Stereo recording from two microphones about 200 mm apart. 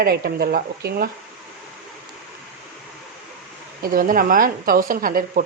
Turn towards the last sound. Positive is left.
turn(degrees=-45)  # may be behind; listen again after turning